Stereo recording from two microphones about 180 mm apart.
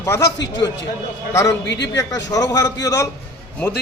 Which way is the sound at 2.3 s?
20° left (ahead or behind).